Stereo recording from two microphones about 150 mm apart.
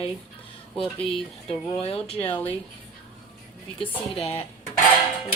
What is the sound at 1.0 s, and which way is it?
Speech, 5° left (ahead or behind).